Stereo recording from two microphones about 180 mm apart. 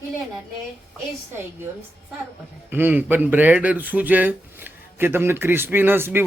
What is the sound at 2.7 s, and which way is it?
Speech, 10° right (ahead or behind).